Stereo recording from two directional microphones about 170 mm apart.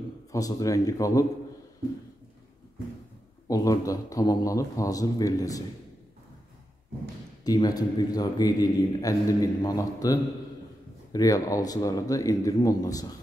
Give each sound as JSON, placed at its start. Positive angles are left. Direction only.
{"t": 0.3, "sound": "a man's voice", "side_deg": 20}
{"t": 3.4, "sound": "a man's voice", "side_deg": 20}
{"t": 7.4, "sound": "a man's voice", "side_deg": 20}